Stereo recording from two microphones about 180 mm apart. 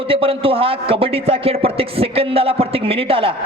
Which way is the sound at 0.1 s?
30° right (ahead or behind).